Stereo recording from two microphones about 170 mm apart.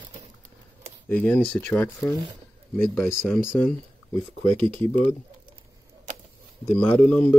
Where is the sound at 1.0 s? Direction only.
10° left (ahead or behind).